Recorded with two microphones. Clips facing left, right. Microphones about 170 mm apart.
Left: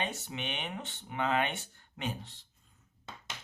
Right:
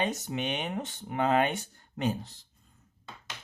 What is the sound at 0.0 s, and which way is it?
Speech, 40° right (ahead or behind).